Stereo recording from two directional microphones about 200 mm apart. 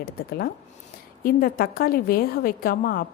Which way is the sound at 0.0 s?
45° left (ahead or behind).